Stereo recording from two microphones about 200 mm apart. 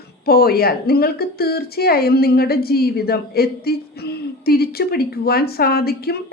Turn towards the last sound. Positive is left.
turn(degrees=50)  # may be behind; listen again after turning